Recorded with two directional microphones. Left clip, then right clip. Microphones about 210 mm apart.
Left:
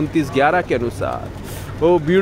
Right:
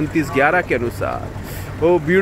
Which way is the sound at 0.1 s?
15° left (ahead or behind).